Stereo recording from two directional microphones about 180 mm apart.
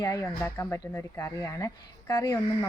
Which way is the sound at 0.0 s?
20° left (ahead or behind).